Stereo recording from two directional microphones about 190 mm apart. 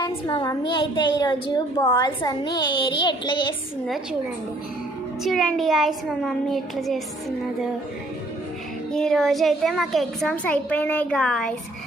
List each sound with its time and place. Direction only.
0.0 s a woman's voice: 20° left (ahead or behind)
5.2 s a child's voice: centre (ahead or behind)
8.9 s a child's voice: 5° left (ahead or behind)